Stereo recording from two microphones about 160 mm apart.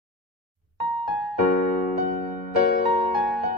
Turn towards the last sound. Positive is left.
turn(degrees=0)  # may be behind; listen again after turning